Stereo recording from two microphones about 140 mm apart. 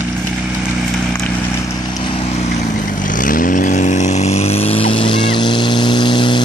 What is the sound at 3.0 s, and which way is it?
Vehicle, 70° left (ahead or behind).